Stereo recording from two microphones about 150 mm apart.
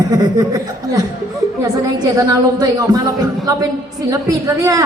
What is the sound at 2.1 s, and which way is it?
Speech, 25° right (ahead or behind).